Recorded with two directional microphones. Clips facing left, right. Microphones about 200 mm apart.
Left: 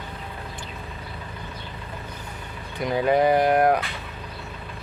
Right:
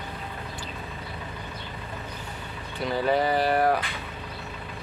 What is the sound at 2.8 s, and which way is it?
Speech, 15° left (ahead or behind).